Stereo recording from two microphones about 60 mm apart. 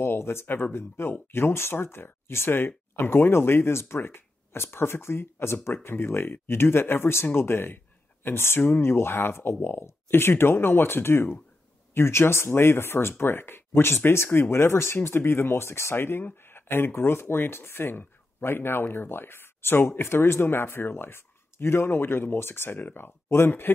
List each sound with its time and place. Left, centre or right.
0.0 s speech: left